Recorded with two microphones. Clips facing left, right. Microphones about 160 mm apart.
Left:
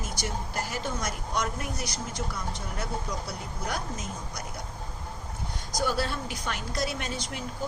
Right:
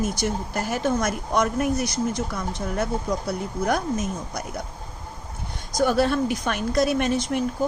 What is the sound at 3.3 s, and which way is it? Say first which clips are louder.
A woman's voice: right 10 dB; 50° right (ahead or behind).